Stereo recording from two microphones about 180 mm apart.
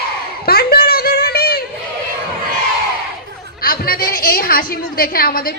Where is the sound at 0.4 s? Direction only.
55° left (ahead or behind).